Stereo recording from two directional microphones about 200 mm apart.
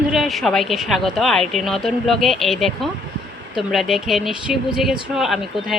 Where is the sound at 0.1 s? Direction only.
Centre (ahead or behind).